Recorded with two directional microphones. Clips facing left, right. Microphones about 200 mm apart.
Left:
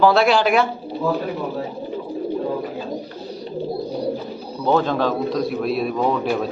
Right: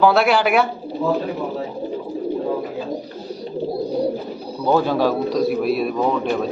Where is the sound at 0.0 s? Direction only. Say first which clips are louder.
Even; 5° right (ahead or behind).